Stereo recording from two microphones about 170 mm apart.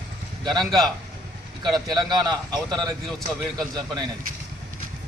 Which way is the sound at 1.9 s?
25° right (ahead or behind).